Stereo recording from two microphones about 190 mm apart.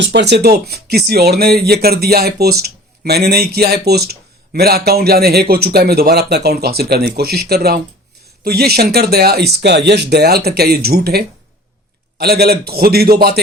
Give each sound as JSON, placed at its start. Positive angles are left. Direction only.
{"t": 0.0, "sound": "speech", "side_deg": -65}